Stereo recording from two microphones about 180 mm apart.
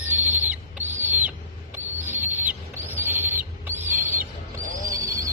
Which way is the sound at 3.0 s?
10° right (ahead or behind).